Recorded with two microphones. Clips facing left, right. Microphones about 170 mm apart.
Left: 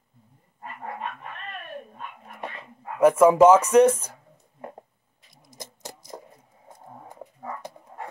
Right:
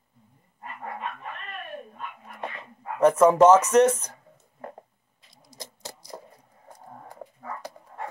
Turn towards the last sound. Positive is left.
turn(degrees=15)  # may be behind; listen again after turning